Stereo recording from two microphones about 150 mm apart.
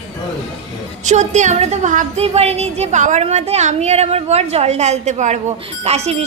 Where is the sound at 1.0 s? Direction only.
50° right (ahead or behind).